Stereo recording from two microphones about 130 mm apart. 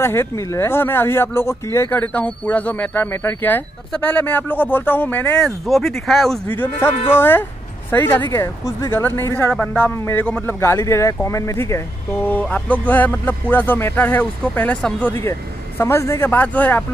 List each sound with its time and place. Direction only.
0.0 s speech: 20° left (ahead or behind); by 6.4 s centre (ahead or behind)
6.5 s speech: 15° left (ahead or behind)